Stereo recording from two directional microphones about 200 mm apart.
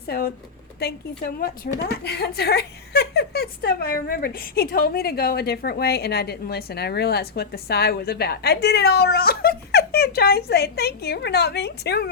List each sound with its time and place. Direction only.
0.8 s a woman's voice: 50° left (ahead or behind)